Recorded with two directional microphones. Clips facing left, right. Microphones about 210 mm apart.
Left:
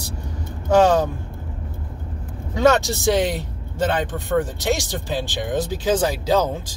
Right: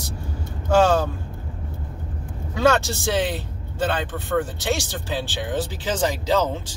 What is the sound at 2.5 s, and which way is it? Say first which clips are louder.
Speech: left 2 dB; 15° left (ahead or behind).